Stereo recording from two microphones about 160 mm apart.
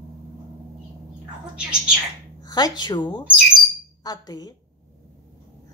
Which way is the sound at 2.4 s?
25° left (ahead or behind).